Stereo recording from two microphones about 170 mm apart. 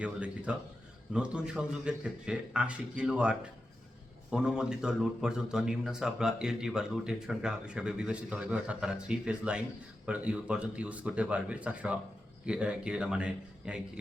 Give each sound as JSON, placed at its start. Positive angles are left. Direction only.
{"t": 0.0, "sound": "a man's voice", "side_deg": -5}